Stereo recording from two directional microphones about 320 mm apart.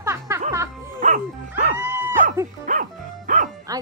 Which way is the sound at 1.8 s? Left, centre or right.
Centre.